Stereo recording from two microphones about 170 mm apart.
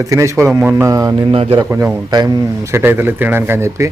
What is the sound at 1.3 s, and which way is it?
Speech, 35° right (ahead or behind).